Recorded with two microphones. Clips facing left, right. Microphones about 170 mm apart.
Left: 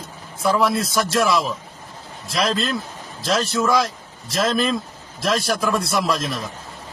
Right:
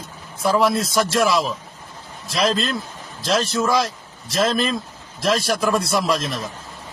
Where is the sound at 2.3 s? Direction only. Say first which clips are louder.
Right 1 dB; centre (ahead or behind).